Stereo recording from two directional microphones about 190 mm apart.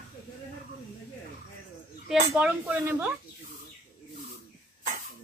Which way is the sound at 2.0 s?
5° right (ahead or behind).